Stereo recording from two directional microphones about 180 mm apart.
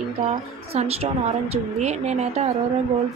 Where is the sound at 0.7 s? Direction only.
35° right (ahead or behind).